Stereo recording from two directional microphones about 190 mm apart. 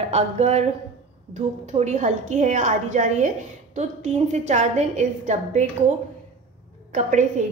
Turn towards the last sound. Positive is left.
turn(degrees=-40)  # may be behind; listen again after turning